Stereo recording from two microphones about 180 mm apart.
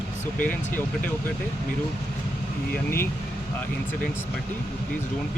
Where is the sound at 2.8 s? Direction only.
15° left (ahead or behind).